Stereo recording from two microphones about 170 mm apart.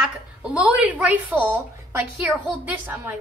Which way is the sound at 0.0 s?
5° right (ahead or behind).